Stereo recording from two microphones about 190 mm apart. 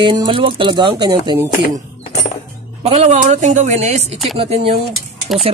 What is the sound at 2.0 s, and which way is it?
Music, 40° left (ahead or behind).